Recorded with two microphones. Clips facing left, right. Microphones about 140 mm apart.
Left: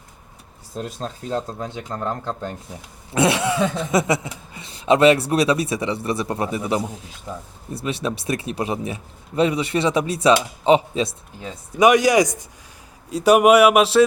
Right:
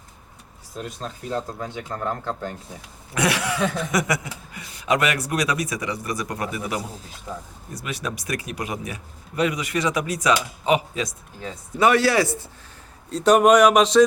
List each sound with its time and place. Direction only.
0.8 s speech: 30° left (ahead or behind); by 14.0 s 5° left (ahead or behind)